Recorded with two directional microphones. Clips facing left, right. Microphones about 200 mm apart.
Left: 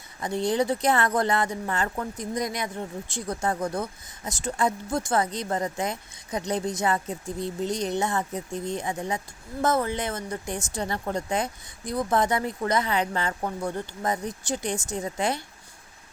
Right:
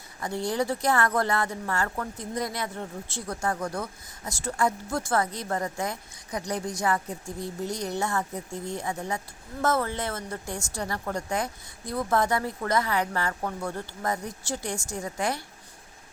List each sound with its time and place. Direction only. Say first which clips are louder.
0.2 s speech: left 3 dB; 20° left (ahead or behind)